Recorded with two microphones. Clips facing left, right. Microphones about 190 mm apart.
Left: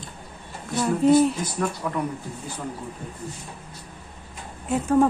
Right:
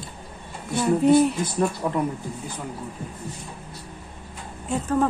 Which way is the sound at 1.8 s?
25° right (ahead or behind).